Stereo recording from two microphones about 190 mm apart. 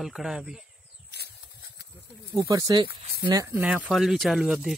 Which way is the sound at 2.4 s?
20° right (ahead or behind).